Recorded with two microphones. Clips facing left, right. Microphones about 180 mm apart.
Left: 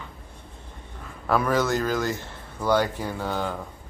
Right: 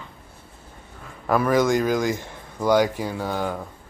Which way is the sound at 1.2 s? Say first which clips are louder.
Right 3 dB; 10° right (ahead or behind).